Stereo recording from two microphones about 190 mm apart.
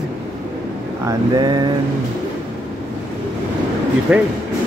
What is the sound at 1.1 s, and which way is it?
Speech, 20° right (ahead or behind).